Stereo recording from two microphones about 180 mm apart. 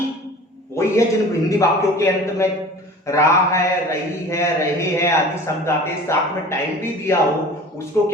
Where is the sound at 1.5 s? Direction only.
15° left (ahead or behind).